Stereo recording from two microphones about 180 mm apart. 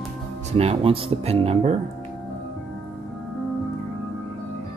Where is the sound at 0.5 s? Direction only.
35° right (ahead or behind).